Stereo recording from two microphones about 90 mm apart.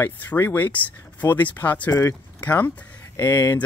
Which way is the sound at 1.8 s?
30° left (ahead or behind).